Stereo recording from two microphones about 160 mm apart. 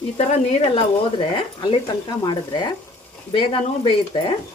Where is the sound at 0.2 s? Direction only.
40° left (ahead or behind).